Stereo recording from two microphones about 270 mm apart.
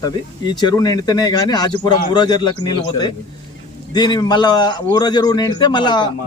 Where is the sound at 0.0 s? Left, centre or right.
Centre.